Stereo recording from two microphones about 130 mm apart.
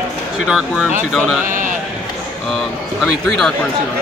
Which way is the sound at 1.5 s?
90° right.